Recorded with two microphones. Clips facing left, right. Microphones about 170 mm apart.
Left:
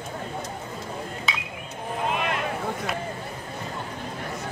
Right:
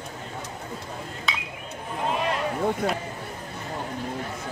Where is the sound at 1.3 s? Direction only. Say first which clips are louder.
Right 1 dB; centre (ahead or behind).